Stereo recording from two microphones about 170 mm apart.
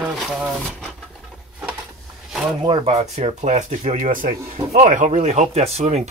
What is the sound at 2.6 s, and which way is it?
Speech, 30° right (ahead or behind).